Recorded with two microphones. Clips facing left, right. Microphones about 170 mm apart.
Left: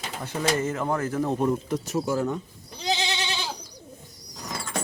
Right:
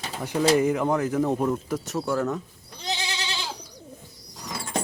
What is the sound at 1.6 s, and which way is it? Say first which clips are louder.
Speech: left 1 dB; 5° right (ahead or behind).